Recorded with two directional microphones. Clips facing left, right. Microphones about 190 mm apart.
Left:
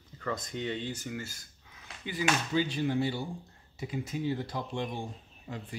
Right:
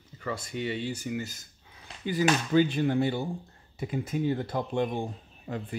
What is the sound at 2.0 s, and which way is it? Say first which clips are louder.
Speech: right 5 dB; 45° right (ahead or behind).